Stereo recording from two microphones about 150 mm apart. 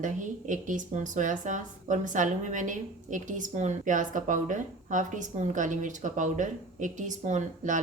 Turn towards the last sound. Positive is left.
turn(degrees=-55)  # may be behind; listen again after turning